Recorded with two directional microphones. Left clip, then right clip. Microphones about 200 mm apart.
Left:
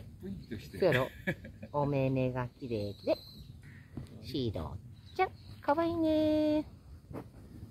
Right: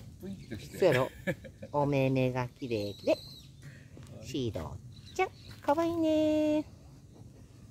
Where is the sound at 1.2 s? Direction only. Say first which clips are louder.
Right 2 dB; 55° right (ahead or behind).